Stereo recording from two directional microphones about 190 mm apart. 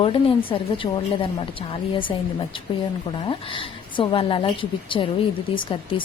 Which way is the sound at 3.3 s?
25° left (ahead or behind).